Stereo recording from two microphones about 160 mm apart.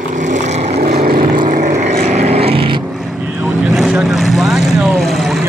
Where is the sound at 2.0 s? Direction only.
40° right (ahead or behind).